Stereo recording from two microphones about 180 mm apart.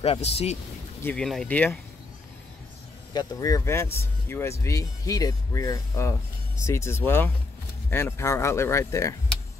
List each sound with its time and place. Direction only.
0.0 s speech: 35° left (ahead or behind)
1.0 s speech: 5° left (ahead or behind)
3.1 s speech: 20° left (ahead or behind)